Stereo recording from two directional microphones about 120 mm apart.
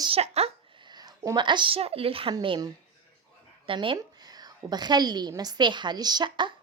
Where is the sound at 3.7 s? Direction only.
45° right (ahead or behind).